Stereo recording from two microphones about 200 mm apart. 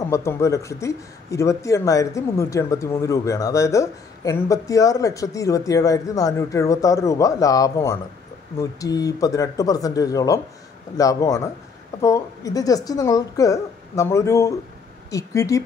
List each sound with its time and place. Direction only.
0.1 s speech: 15° left (ahead or behind)